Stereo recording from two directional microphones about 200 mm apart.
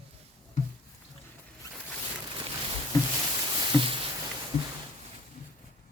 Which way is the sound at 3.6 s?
25° right (ahead or behind).